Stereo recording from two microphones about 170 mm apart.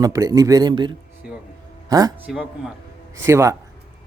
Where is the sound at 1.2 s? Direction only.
5° right (ahead or behind).